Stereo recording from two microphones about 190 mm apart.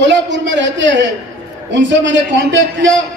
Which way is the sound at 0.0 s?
70° right (ahead or behind).